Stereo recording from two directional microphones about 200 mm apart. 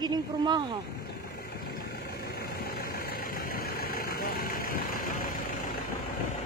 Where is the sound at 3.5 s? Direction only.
50° left (ahead or behind).